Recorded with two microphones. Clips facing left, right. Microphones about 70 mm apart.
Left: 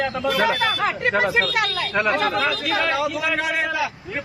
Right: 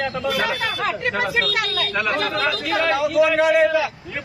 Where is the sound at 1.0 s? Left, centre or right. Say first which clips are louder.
Left 4 dB; left.